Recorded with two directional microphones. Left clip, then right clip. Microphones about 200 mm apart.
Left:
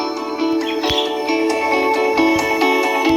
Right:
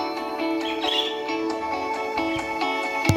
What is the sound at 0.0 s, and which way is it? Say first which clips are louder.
Music: left 6 dB; 30° left (ahead or behind).